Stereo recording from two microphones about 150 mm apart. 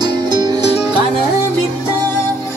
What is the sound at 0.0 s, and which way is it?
Music, 25° right (ahead or behind).